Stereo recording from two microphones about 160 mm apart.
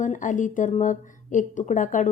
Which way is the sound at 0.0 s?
50° left (ahead or behind).